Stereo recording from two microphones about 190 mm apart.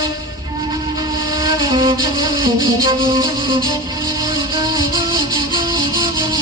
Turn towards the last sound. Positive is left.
turn(degrees=-20)  # may be behind; listen again after turning